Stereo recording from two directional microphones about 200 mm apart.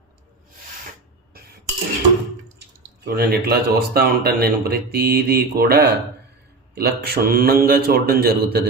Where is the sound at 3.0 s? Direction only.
50° right (ahead or behind).